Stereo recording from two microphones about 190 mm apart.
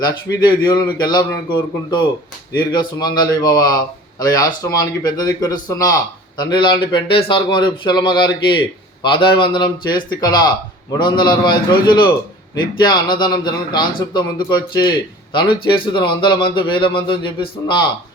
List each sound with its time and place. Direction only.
0.0 s a man's voice: 20° left (ahead or behind)